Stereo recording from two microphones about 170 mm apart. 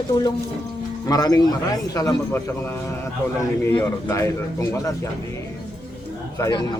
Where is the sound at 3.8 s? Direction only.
15° left (ahead or behind).